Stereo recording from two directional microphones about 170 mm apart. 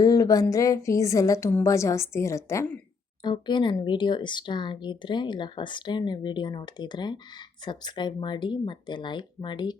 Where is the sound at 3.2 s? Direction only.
25° left (ahead or behind).